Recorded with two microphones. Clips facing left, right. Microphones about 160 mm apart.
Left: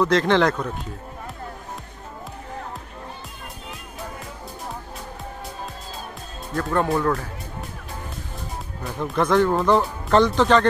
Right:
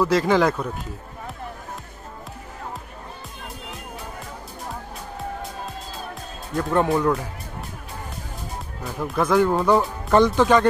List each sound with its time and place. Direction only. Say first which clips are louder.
0.0 s speech: even; 5° right (ahead or behind)
6.5 s speech: right 2 dB; 15° right (ahead or behind)
9.0 s speech: even; 5° right (ahead or behind)